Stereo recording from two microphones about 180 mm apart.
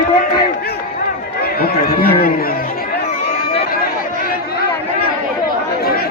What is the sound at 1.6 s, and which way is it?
Speech, 60° left (ahead or behind).